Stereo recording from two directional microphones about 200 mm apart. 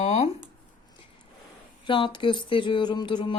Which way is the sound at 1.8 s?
25° left (ahead or behind).